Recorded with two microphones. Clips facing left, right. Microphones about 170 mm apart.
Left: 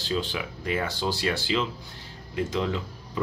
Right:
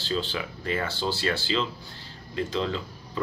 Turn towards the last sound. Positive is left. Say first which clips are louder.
# left 1 dB
turn(degrees=15)  # may be behind; listen again after turning